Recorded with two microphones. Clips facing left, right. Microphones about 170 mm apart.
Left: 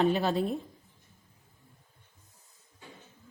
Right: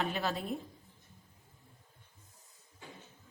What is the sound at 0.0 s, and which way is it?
Speech, 30° left (ahead or behind).